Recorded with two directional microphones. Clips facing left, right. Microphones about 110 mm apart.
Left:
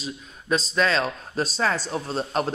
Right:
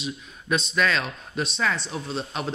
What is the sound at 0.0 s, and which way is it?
Speech, 35° left (ahead or behind).